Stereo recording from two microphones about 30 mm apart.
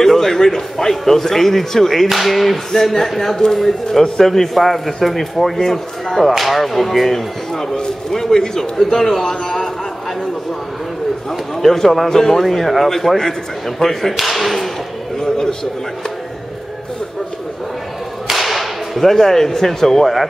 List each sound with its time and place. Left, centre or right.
0.0 s a man's voice: centre
2.7 s a man's voice: centre
6.3 s speech: centre
7.5 s speech: left
8.1 s a man's voice: centre
11.6 s a man's voice: centre
14.1 s speech: centre
15.1 s a sound: centre
18.3 s whip: centre